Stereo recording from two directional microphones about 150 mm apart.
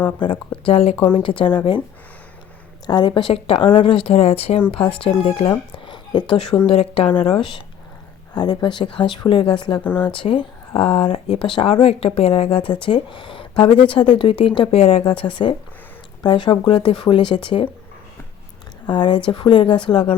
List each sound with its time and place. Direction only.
0.2 s speech: 30° left (ahead or behind)
2.8 s speech: 30° left (ahead or behind)
18.9 s speech: 30° left (ahead or behind)